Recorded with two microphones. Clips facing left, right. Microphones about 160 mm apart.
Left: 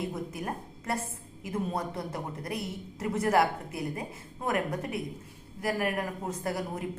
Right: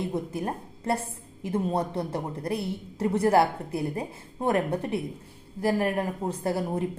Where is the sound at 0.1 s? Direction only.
30° right (ahead or behind).